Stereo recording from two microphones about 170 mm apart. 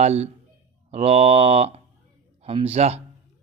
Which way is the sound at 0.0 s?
40° right (ahead or behind).